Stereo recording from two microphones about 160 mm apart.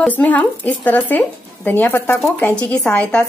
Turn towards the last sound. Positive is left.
turn(degrees=10)  # may be behind; listen again after turning